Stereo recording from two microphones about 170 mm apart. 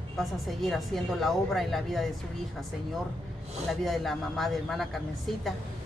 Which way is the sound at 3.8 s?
Centre (ahead or behind).